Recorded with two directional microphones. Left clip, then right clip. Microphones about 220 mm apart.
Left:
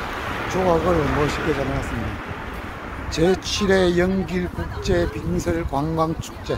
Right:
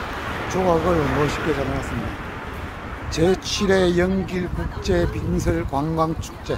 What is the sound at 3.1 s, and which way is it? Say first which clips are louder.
Speech: even; 10° right (ahead or behind).